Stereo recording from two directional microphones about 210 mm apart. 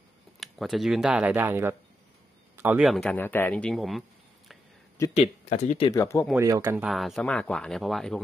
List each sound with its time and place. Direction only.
0.4 s speech: centre (ahead or behind)
5.1 s speech: 30° left (ahead or behind)
5.9 s speech: 15° left (ahead or behind)
6.3 s speech: 15° right (ahead or behind)
6.8 s speech: centre (ahead or behind)